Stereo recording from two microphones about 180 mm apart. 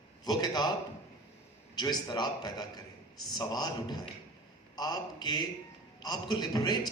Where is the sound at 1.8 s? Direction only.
25° left (ahead or behind).